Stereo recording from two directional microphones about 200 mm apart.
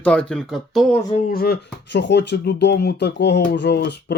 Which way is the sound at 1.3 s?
50° left (ahead or behind).